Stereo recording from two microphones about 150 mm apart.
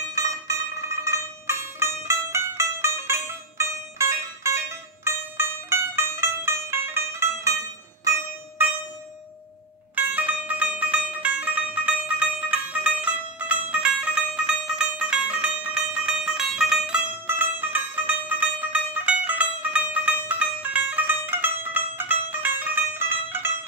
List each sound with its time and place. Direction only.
1.0 s music: 20° right (ahead or behind)
9.9 s music: 10° right (ahead or behind)